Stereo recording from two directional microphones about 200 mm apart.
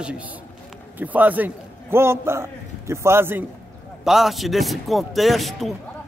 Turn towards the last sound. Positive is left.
turn(degrees=0)  # may be behind; listen again after turning